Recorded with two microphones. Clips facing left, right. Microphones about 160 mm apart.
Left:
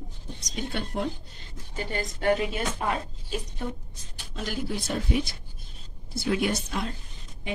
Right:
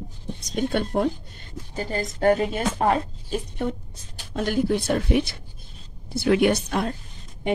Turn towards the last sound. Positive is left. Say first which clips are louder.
# right 7 dB
turn(degrees=-60)  # may be behind; listen again after turning